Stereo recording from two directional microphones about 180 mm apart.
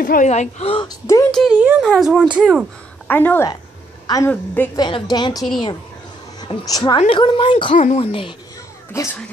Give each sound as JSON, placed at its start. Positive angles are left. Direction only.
{"t": 0.0, "sound": "a woman's voice", "side_deg": 45}
{"t": 0.8, "sound": "a woman's voice", "side_deg": 20}
{"t": 1.3, "sound": "speech", "side_deg": -5}
{"t": 3.1, "sound": "a woman's voice", "side_deg": 10}
{"t": 4.7, "sound": "a woman's voice", "side_deg": 25}
{"t": 6.4, "sound": "a woman's voice", "side_deg": 25}
{"t": 7.7, "sound": "a woman's voice", "side_deg": 40}
{"t": 8.9, "sound": "a woman's voice", "side_deg": 15}